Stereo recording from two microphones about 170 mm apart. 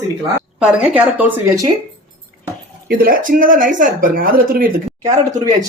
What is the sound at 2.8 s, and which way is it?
Speech, 60° right (ahead or behind).